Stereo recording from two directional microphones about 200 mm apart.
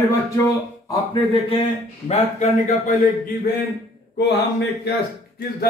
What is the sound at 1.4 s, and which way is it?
A man's voice, 30° left (ahead or behind).